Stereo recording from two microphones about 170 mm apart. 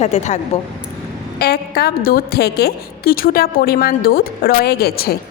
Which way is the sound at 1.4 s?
70° left (ahead or behind).